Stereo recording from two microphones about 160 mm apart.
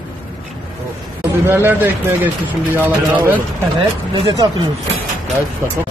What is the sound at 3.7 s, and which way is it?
Speech, 35° right (ahead or behind).